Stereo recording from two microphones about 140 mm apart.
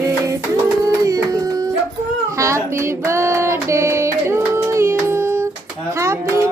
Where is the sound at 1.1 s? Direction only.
25° right (ahead or behind).